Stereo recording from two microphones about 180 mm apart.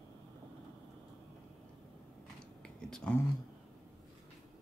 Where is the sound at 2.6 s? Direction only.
5° left (ahead or behind).